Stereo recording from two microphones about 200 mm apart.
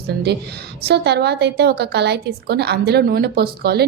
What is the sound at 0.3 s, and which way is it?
A woman's voice, 55° right (ahead or behind).